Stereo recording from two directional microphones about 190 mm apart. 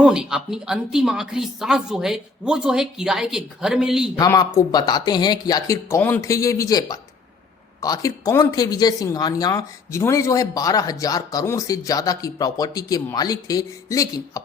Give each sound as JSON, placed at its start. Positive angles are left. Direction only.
{"t": 0.0, "sound": "speech", "side_deg": -5}
{"t": 4.2, "sound": "speech", "side_deg": 20}